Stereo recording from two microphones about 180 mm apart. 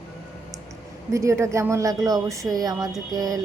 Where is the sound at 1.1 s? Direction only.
15° right (ahead or behind).